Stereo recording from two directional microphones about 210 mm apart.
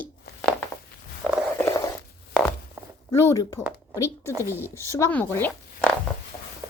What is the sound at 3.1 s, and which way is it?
Speech, 15° left (ahead or behind).